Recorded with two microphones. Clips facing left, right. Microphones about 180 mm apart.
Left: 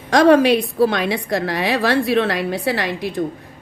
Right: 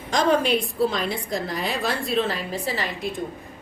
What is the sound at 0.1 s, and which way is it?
A woman's voice, 70° left (ahead or behind).